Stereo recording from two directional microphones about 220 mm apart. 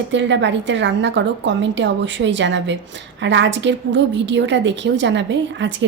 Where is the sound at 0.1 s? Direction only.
55° right (ahead or behind).